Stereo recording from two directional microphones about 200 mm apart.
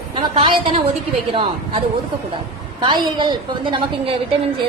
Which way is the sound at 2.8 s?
20° right (ahead or behind).